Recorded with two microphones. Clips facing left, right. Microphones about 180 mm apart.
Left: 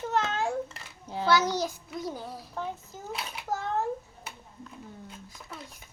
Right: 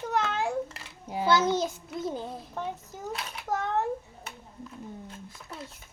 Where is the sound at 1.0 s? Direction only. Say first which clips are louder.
Right 2 dB; 15° right (ahead or behind).